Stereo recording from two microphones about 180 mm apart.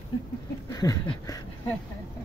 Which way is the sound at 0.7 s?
20° left (ahead or behind).